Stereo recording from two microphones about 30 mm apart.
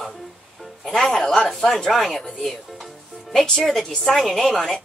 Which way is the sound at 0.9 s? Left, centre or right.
Centre.